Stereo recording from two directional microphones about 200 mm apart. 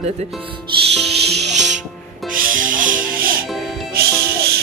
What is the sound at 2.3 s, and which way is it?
Music, 40° right (ahead or behind).